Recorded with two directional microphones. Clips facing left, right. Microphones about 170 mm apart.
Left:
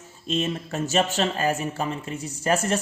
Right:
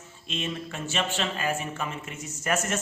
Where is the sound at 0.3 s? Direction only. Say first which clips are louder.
Left 6 dB; 40° left (ahead or behind).